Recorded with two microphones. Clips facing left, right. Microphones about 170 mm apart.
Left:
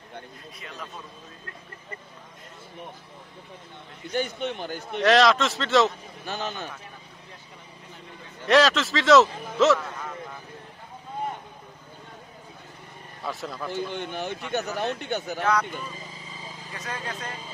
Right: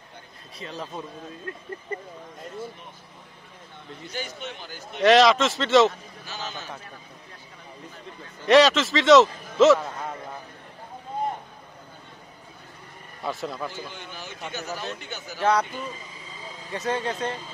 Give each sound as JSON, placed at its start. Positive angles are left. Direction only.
{"t": 0.6, "sound": "a man's voice", "side_deg": -30}
{"t": 4.1, "sound": "speech", "side_deg": 55}
{"t": 5.0, "sound": "a man's voice", "side_deg": 0}
{"t": 6.2, "sound": "speech", "side_deg": 55}
{"t": 8.5, "sound": "a man's voice", "side_deg": 0}
{"t": 13.2, "sound": "a man's voice", "side_deg": 0}
{"t": 13.7, "sound": "speech", "side_deg": 60}
{"t": 16.7, "sound": "speech", "side_deg": -30}